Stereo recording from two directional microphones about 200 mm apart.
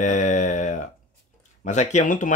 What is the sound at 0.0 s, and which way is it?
Mantra, 35° left (ahead or behind).